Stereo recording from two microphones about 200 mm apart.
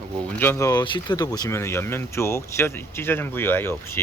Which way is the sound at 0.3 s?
10° left (ahead or behind).